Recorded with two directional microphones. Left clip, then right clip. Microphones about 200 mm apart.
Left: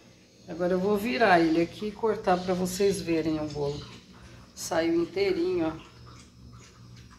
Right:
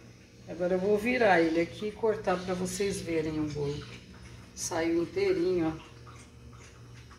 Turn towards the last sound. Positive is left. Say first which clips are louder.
# left 1 dB
turn(degrees=5)  # may be behind; listen again after turning